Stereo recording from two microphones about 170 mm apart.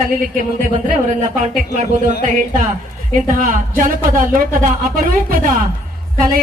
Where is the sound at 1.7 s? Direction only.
45° right (ahead or behind).